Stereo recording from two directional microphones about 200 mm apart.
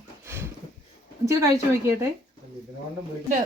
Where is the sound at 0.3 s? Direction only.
10° right (ahead or behind).